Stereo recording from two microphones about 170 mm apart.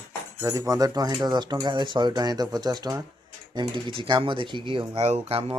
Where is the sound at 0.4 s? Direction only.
20° right (ahead or behind).